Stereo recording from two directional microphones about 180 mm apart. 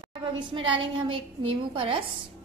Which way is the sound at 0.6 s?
30° right (ahead or behind).